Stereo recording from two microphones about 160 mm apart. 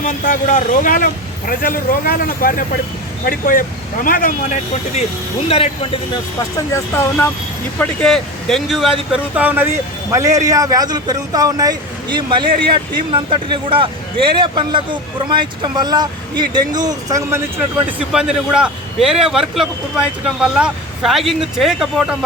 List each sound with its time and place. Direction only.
0.0 s a man's voice: 50° left (ahead or behind)
5.5 s speech: 35° left (ahead or behind)
6.7 s speech: 15° left (ahead or behind)
7.8 s a man's voice: 5° left (ahead or behind); by 17.4 s 20° right (ahead or behind)
17.8 s a man's voice: 5° right (ahead or behind)